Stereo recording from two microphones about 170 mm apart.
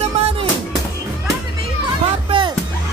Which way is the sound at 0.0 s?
35° right (ahead or behind).